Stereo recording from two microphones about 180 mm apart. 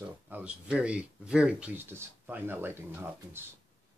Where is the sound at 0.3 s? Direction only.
5° right (ahead or behind).